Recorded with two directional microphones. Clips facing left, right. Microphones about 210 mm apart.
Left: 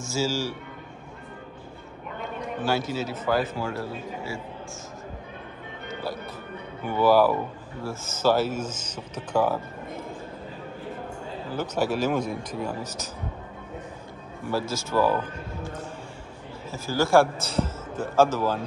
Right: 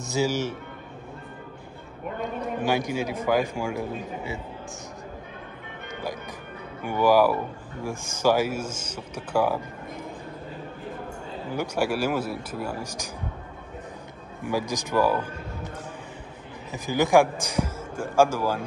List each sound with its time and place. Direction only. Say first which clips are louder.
0.0 s speech: right 2 dB; 20° right (ahead or behind)
2.6 s a man's voice: right 1 dB; 15° right (ahead or behind)
6.8 s a man's voice: even; 10° right (ahead or behind)
11.5 s a man's voice: even; 10° right (ahead or behind)
14.4 s a man's voice: right 1 dB; 15° right (ahead or behind)
16.7 s a man's voice: right 1 dB; 15° right (ahead or behind)